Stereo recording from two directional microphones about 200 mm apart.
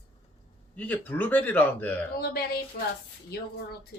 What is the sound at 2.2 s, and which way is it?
Speech, 50° left (ahead or behind).